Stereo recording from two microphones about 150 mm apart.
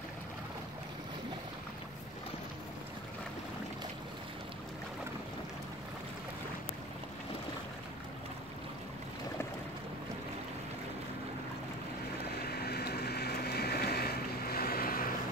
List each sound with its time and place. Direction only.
12.4 s boat: 90° left